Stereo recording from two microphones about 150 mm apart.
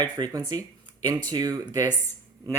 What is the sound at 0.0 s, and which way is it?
Speech, 30° right (ahead or behind).